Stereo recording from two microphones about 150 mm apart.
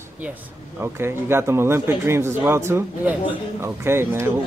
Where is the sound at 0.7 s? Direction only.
15° right (ahead or behind).